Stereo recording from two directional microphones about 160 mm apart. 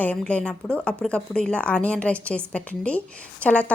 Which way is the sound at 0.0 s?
10° left (ahead or behind).